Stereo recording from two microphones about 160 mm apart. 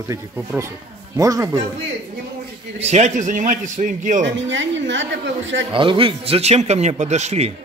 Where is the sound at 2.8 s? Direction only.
45° right (ahead or behind).